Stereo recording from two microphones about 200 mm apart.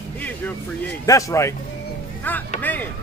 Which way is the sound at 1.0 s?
15° left (ahead or behind).